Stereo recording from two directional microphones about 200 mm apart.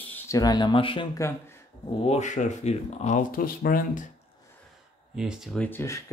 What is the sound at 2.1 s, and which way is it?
Speech, 35° left (ahead or behind).